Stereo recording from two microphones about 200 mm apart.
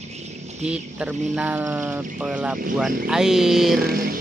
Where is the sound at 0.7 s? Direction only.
5° right (ahead or behind).